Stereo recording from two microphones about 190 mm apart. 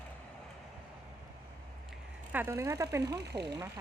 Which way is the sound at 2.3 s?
15° right (ahead or behind).